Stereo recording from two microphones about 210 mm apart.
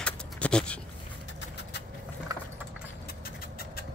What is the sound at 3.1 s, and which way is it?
Vehicle, 45° left (ahead or behind).